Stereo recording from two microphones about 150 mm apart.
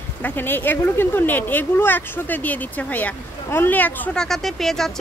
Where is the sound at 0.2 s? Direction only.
15° left (ahead or behind).